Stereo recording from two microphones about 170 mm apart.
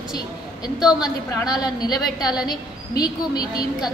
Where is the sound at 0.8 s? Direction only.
25° left (ahead or behind).